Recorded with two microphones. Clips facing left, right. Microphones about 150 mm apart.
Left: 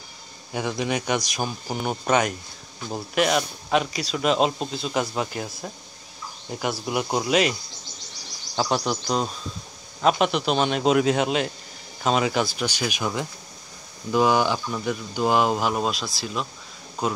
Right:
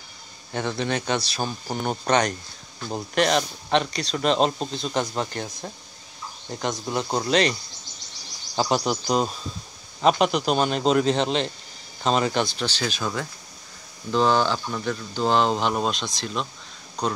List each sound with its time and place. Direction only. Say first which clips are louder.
0.5 s speech: even; 10° left (ahead or behind)
8.5 s speech: right 1 dB; 5° right (ahead or behind)